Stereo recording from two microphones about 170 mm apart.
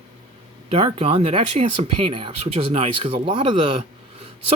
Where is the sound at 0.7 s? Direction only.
35° right (ahead or behind).